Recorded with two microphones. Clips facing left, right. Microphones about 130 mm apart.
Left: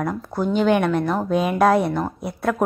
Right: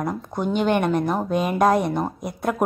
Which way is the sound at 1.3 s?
Centre (ahead or behind).